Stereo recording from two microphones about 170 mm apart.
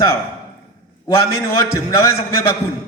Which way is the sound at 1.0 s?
20° left (ahead or behind).